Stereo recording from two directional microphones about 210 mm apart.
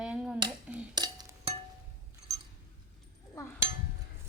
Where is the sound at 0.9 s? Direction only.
20° right (ahead or behind).